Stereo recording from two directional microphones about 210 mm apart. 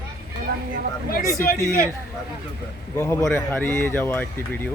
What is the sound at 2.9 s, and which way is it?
Speech, 10° left (ahead or behind).